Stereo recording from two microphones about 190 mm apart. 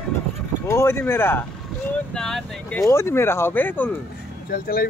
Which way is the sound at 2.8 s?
15° left (ahead or behind).